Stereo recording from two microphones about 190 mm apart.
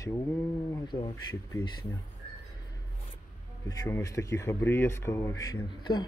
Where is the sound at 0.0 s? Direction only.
15° left (ahead or behind).